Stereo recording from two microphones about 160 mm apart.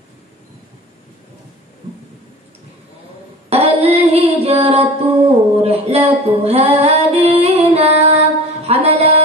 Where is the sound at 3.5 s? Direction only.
40° right (ahead or behind).